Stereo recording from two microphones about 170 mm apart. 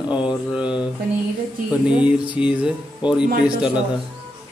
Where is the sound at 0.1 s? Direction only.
25° left (ahead or behind).